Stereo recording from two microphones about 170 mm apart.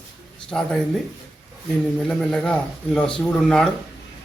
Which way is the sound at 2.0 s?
5° left (ahead or behind).